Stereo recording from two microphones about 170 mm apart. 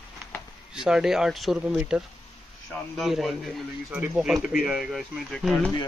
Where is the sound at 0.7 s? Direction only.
5° right (ahead or behind).